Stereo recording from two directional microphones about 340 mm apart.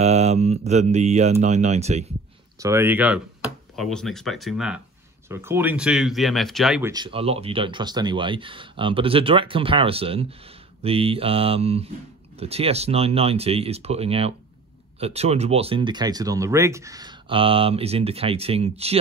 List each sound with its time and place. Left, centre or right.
0.0 s mantra: centre
2.6 s speech: centre